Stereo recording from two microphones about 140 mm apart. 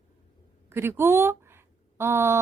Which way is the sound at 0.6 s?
15° right (ahead or behind).